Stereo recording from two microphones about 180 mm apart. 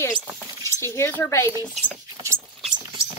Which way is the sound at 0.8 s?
15° left (ahead or behind).